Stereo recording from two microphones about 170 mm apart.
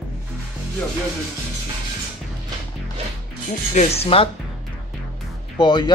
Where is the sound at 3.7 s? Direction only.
40° left (ahead or behind).